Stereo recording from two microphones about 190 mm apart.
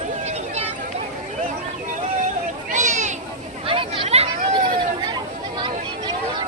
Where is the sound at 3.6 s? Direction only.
30° right (ahead or behind).